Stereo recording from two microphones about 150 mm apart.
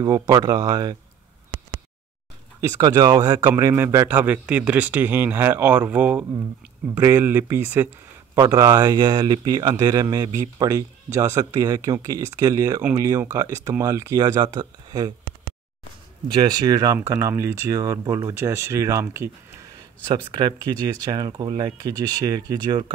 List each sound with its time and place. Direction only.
0.0 s speech: 25° right (ahead or behind)
2.7 s a man's voice: 25° right (ahead or behind)
8.4 s speech: 25° right (ahead or behind)
16.4 s speech: 25° right (ahead or behind)
21.0 s speech: 25° right (ahead or behind)